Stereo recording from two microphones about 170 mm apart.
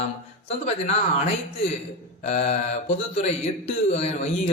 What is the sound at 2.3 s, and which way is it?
A man's voice, 45° left (ahead or behind).